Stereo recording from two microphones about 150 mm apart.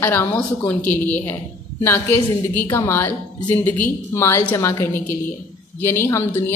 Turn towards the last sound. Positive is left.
turn(degrees=15)  # may be behind; listen again after turning